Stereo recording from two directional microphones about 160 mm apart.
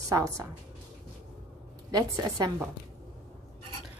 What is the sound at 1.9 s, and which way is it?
Speech, 25° right (ahead or behind).